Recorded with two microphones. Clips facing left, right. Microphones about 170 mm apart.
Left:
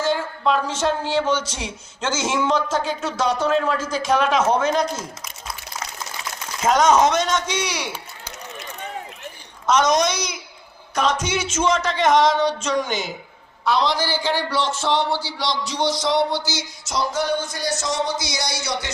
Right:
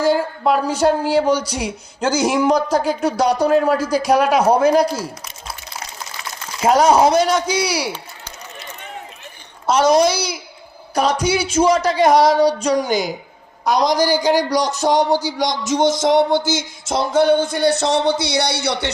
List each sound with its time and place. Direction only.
0.0 s speech: 35° right (ahead or behind)
6.6 s speech: 30° right (ahead or behind)
9.6 s speech: 30° right (ahead or behind); by 18.9 s 65° right (ahead or behind)